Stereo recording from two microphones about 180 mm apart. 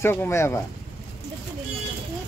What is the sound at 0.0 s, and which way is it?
Speech, 10° left (ahead or behind).